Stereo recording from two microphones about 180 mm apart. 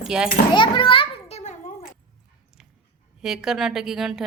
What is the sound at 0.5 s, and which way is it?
Speech, 25° left (ahead or behind).